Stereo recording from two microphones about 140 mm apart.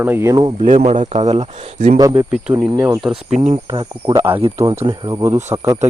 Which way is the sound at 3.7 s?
35° right (ahead or behind).